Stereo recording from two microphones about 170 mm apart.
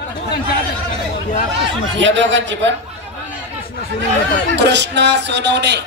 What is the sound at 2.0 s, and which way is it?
Speech, 90° right.